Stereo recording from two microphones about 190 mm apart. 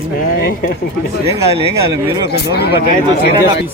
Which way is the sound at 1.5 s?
30° right (ahead or behind).